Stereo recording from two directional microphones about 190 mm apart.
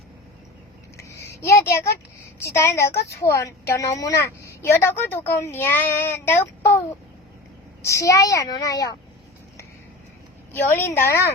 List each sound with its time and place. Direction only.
0.9 s a sound: 15° left (ahead or behind)
2.4 s a woman's voice: 15° left (ahead or behind)
10.5 s a woman's voice: 10° left (ahead or behind)